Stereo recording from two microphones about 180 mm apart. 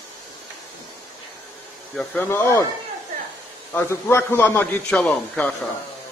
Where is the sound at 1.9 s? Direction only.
10° left (ahead or behind).